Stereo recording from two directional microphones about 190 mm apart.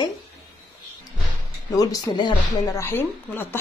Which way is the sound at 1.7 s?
20° left (ahead or behind).